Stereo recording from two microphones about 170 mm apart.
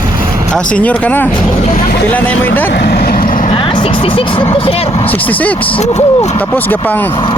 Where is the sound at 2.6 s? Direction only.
60° left (ahead or behind).